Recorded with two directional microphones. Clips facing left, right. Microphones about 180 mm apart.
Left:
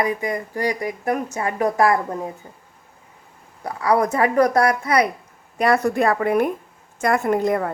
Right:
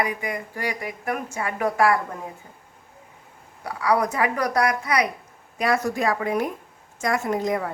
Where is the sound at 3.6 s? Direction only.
45° left (ahead or behind).